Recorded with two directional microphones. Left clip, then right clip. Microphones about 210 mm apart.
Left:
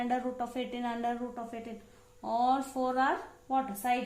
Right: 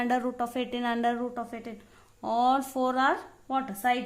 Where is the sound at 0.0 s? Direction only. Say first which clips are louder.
Right 4 dB; 40° right (ahead or behind).